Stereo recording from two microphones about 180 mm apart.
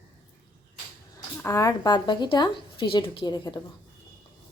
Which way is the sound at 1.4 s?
15° left (ahead or behind).